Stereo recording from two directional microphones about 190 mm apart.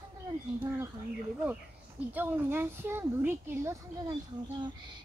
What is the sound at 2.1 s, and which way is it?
Speech, 10° right (ahead or behind).